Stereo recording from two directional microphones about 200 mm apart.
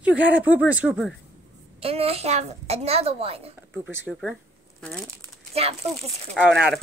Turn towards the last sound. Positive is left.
turn(degrees=0)  # may be behind; listen again after turning